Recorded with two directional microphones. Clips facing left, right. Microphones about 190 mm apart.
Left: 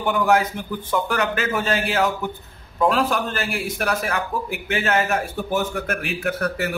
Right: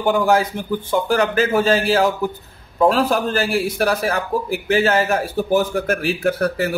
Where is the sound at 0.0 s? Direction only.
30° right (ahead or behind).